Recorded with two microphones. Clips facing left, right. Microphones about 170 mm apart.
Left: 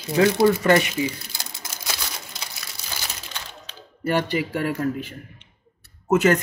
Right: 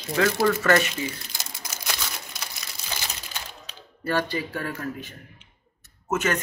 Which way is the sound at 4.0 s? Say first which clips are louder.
Left 3 dB; 20° left (ahead or behind).